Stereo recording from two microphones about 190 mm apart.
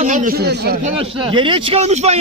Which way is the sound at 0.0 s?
45° right (ahead or behind).